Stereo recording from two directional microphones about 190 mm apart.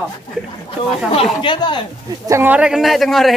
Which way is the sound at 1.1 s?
30° left (ahead or behind).